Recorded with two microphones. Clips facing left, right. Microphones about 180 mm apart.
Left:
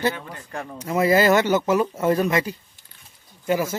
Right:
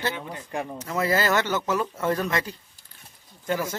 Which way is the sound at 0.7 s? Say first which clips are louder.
Left 7 dB; 15° left (ahead or behind).